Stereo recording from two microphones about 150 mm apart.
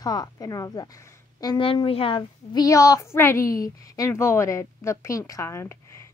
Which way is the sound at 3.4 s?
70° left (ahead or behind).